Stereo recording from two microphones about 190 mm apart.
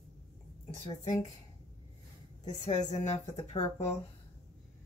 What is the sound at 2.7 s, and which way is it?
Speech, 25° left (ahead or behind).